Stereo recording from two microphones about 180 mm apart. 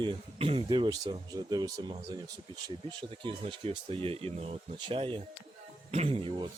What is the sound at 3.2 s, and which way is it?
Speech, 30° right (ahead or behind).